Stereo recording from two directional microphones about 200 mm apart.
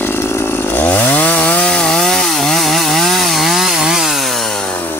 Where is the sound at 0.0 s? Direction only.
10° left (ahead or behind).